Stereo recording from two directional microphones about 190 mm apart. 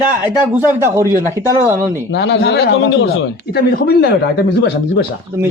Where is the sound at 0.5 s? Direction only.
10° right (ahead or behind).